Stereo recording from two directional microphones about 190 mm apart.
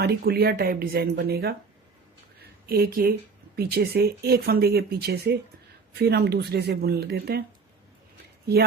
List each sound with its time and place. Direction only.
0.0 s speech: 55° right (ahead or behind)
2.6 s speech: 55° right (ahead or behind)